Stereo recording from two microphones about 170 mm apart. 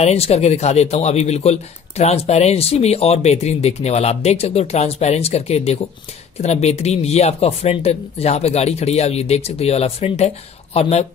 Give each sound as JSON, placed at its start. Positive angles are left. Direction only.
{"t": 0.0, "sound": "speech", "side_deg": 40}